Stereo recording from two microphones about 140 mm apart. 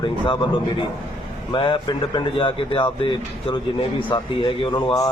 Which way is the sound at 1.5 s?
35° left (ahead or behind).